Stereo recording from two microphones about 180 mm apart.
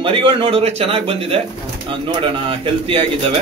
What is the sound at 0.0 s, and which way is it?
A man's voice, 30° right (ahead or behind).